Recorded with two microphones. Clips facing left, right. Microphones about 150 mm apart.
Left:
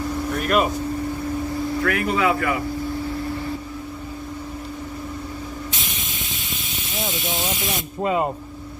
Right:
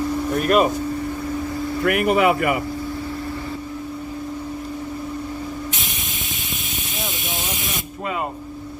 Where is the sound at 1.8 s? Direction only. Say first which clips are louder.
Right 5 dB; 15° right (ahead or behind).